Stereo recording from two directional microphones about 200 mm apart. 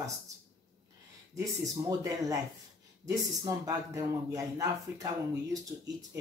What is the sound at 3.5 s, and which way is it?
Speech, 15° right (ahead or behind).